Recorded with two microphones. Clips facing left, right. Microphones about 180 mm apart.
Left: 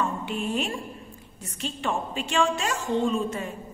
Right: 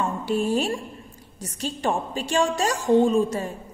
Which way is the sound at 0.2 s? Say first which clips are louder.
Right 6 dB; 35° right (ahead or behind).